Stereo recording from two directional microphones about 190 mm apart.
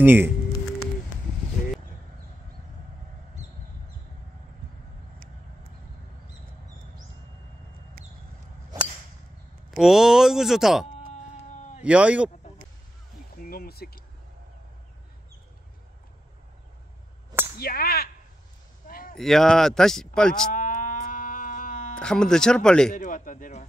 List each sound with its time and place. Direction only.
0.0 s speech: 10° right (ahead or behind)
9.7 s speech: centre (ahead or behind)
11.1 s a sound: 35° left (ahead or behind)
11.8 s speech: 5° right (ahead or behind)
13.4 s speech: 50° left (ahead or behind)
17.6 s whip: 55° left (ahead or behind)
18.9 s a sound: 50° left (ahead or behind)
19.1 s speech: centre (ahead or behind)
20.5 s music: 45° left (ahead or behind)
21.9 s speech: 5° left (ahead or behind)
22.9 s a man's voice: 45° left (ahead or behind)